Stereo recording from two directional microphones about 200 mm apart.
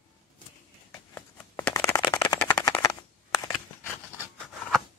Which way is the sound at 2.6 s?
15° left (ahead or behind).